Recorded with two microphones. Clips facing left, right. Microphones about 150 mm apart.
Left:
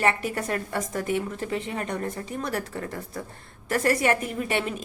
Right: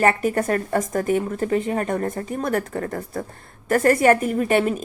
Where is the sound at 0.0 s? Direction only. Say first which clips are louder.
Right 6 dB; 45° right (ahead or behind).